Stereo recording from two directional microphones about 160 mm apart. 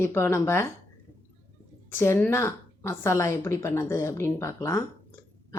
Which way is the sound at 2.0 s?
15° left (ahead or behind).